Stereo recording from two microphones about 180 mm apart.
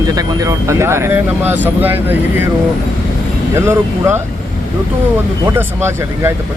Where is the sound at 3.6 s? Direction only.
15° right (ahead or behind).